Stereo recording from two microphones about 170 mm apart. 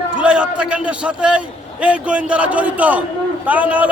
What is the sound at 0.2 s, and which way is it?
A man's voice, 5° right (ahead or behind).